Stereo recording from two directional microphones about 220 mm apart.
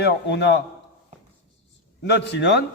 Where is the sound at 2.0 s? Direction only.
50° left (ahead or behind).